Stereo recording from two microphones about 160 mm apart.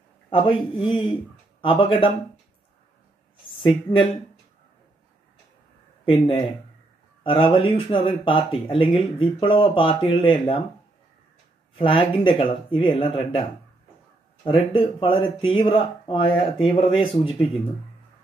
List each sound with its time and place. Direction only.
0.3 s speech: 35° left (ahead or behind)
3.5 s speech: 30° left (ahead or behind)
6.0 s speech: 35° left (ahead or behind)
11.8 s speech: 35° left (ahead or behind)
14.7 s speech: 35° left (ahead or behind)